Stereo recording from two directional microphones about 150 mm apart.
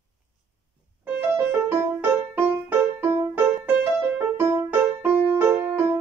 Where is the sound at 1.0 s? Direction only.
15° right (ahead or behind).